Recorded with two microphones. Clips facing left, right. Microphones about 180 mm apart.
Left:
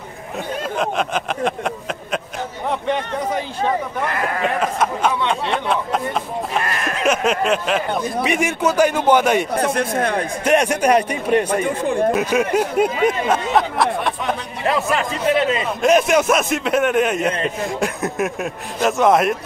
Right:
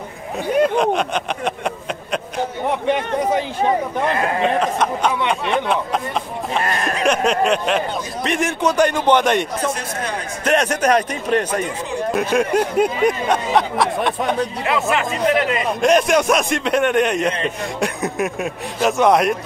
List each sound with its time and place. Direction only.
0.7 s a man's voice: centre (ahead or behind)
2.9 s a man's voice: 15° right (ahead or behind)
4.6 s a sound: 5° left (ahead or behind)
6.6 s a sound: 30° right (ahead or behind)
7.0 s a sound: centre (ahead or behind)
8.2 s a man's voice: 10° left (ahead or behind)
9.6 s speech: 55° left (ahead or behind)
10.4 s a man's voice: 10° left (ahead or behind)
14.7 s speech: 35° left (ahead or behind)
15.8 s a man's voice: 5° left (ahead or behind)